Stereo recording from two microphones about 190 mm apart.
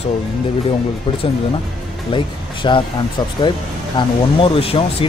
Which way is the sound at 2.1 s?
25° left (ahead or behind).